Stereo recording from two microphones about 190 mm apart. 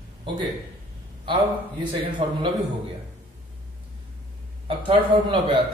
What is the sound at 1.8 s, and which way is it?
Speech, 25° right (ahead or behind).